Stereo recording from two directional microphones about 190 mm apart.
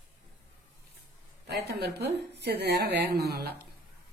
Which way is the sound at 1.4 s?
60° right (ahead or behind).